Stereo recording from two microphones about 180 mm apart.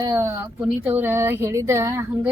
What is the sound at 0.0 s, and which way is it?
A woman's voice, 15° right (ahead or behind).